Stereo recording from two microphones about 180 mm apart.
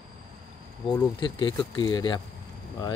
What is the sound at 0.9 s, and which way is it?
Speech, 25° left (ahead or behind).